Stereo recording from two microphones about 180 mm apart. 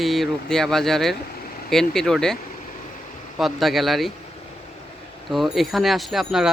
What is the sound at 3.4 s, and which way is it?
Speech, centre (ahead or behind).